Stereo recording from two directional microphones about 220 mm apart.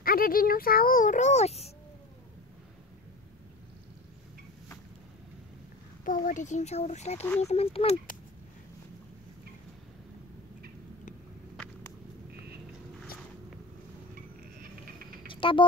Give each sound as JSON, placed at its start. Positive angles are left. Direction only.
{"t": 0.0, "sound": "a child's voice", "side_deg": 40}
{"t": 6.0, "sound": "speech", "side_deg": 35}
{"t": 15.2, "sound": "a sound", "side_deg": 25}